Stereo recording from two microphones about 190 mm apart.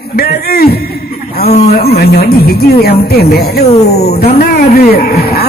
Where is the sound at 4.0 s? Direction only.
55° left (ahead or behind).